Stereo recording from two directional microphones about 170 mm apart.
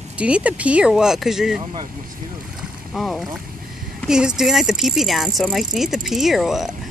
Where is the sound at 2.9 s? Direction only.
Centre (ahead or behind).